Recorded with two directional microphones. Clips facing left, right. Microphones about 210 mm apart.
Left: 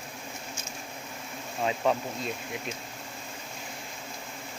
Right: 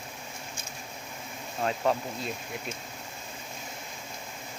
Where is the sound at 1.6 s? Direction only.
5° left (ahead or behind).